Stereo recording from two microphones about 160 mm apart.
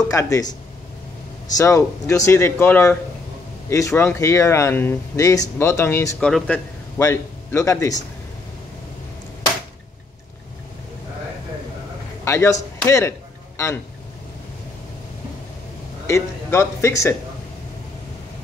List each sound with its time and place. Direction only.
0.0 s speech: 20° left (ahead or behind)
1.6 s speech: 20° left (ahead or behind)
6.1 s speech: 5° left (ahead or behind)
7.0 s a man's voice: 20° left (ahead or behind)
12.3 s speech: 20° left (ahead or behind)
16.1 s speech: 15° left (ahead or behind)